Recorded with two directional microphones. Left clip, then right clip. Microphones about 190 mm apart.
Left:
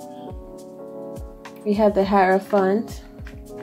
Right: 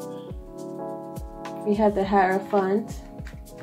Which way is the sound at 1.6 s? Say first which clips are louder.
Left 4 dB; 55° left (ahead or behind).